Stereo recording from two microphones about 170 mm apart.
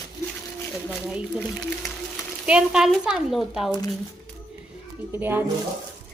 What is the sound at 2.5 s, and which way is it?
Speech, 5° right (ahead or behind).